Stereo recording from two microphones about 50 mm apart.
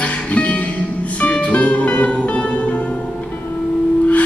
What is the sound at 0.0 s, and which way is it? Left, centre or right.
Music, left.